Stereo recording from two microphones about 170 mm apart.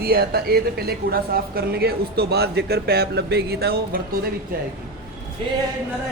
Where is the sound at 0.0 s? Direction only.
65° right (ahead or behind).